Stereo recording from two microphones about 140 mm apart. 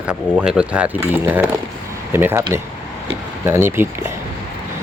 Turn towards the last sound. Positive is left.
turn(degrees=-15)  # may be behind; listen again after turning